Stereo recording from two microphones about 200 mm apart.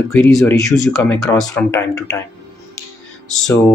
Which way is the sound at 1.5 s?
15° left (ahead or behind).